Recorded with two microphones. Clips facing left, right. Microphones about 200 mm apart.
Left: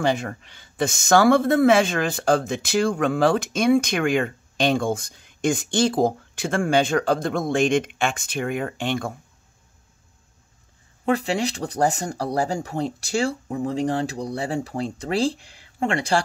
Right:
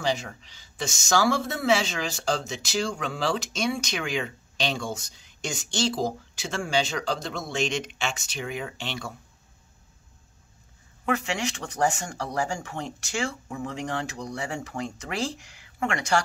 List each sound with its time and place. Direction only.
0.0 s speech: 55° left (ahead or behind)
11.1 s speech: 35° left (ahead or behind)